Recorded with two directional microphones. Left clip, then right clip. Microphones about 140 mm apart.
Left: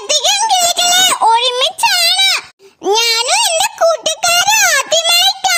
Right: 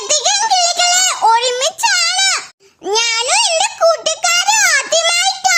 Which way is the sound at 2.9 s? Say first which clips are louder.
Left 1 dB; 35° left (ahead or behind).